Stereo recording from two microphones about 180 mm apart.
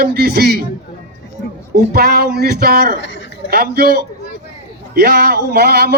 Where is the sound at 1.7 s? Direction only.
60° right (ahead or behind).